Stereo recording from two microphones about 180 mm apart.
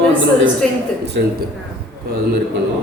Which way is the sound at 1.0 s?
70° right (ahead or behind).